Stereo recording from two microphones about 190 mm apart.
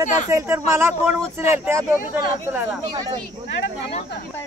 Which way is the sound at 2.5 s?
10° right (ahead or behind).